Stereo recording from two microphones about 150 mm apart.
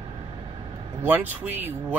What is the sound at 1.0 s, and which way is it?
Speech, 15° right (ahead or behind).